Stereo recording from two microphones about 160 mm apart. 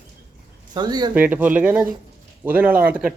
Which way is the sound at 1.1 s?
10° right (ahead or behind).